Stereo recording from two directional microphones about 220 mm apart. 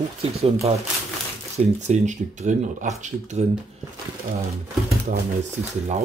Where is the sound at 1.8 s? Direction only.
30° right (ahead or behind).